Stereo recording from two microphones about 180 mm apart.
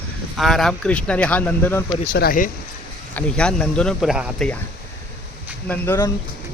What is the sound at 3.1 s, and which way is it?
Speech, 5° left (ahead or behind).